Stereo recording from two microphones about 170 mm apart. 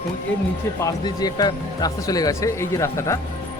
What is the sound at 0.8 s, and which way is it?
Speech, 20° left (ahead or behind).